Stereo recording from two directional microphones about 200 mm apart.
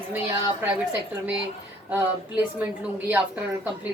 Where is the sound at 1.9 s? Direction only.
5° right (ahead or behind).